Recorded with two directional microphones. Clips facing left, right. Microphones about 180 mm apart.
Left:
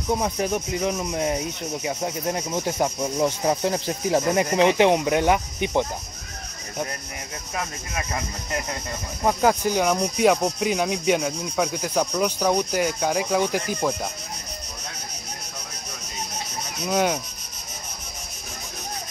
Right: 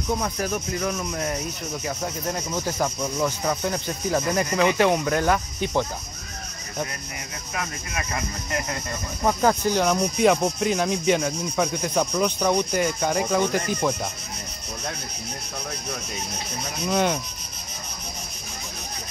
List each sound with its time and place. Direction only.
0.2 s speech: 20° left (ahead or behind)
7.5 s speech: 25° left (ahead or behind)
9.2 s speech: 10° left (ahead or behind)
16.8 s speech: 5° left (ahead or behind)